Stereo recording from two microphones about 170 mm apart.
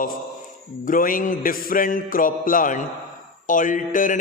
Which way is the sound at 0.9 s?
55° left (ahead or behind).